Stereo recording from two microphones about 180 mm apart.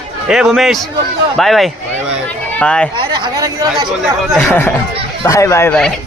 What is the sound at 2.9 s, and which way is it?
Speech, 25° right (ahead or behind).